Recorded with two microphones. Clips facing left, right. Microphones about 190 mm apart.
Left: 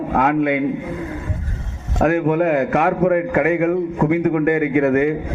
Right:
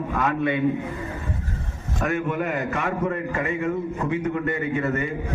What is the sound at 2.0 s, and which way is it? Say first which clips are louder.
A man's voice: left 9 dB; 60° left (ahead or behind).